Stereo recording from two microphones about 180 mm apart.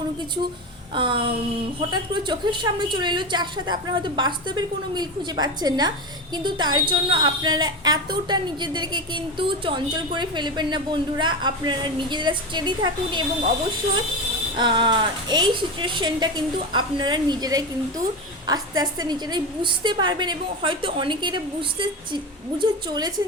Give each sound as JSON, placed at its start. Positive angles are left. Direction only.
{"t": 0.9, "sound": "a woman's voice", "side_deg": -30}
{"t": 14.5, "sound": "a woman's voice", "side_deg": -25}